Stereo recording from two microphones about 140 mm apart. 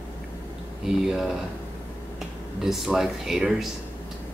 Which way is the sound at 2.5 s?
Centre (ahead or behind).